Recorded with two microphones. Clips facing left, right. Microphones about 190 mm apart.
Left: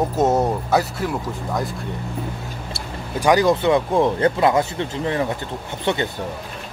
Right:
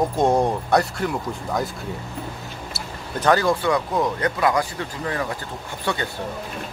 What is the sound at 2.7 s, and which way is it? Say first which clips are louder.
Speech: left 3 dB; 10° left (ahead or behind).